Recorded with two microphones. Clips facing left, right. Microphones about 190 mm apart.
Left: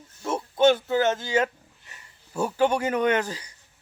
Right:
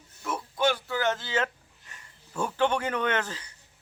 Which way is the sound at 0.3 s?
25° left (ahead or behind).